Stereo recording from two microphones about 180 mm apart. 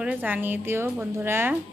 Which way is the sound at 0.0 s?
10° right (ahead or behind).